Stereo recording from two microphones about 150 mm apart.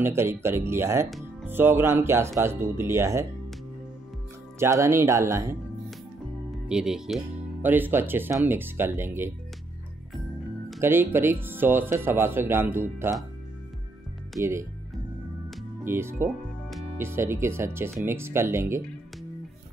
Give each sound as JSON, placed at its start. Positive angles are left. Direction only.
{"t": 0.0, "sound": "speech", "side_deg": -15}
{"t": 4.6, "sound": "speech", "side_deg": -20}
{"t": 6.7, "sound": "speech", "side_deg": -5}
{"t": 10.8, "sound": "speech", "side_deg": -15}
{"t": 14.4, "sound": "speech", "side_deg": -20}
{"t": 15.8, "sound": "speech", "side_deg": -15}